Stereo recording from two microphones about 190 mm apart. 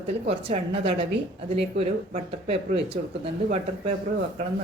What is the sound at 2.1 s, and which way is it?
Speech, 30° right (ahead or behind).